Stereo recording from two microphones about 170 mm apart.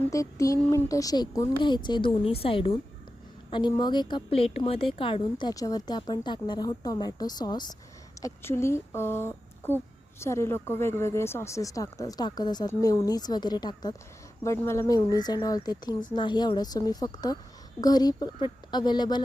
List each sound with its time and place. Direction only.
0.1 s a woman's voice: 20° left (ahead or behind)